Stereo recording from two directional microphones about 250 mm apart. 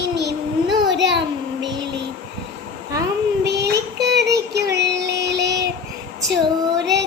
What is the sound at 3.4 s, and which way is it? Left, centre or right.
Child singing, right.